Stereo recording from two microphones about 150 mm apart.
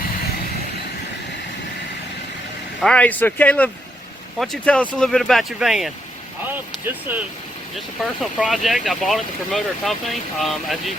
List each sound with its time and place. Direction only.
2.8 s speech: 10° left (ahead or behind)
7.1 s speech: 15° right (ahead or behind)
8.2 s speech: centre (ahead or behind)